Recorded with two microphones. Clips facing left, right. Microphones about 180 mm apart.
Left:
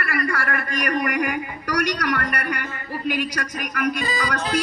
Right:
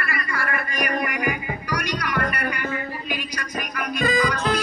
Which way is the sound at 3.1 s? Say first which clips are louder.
Left 4 dB; 70° left (ahead or behind).